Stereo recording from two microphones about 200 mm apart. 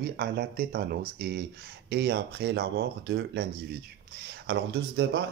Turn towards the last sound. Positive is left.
turn(degrees=-60)  # may be behind; listen again after turning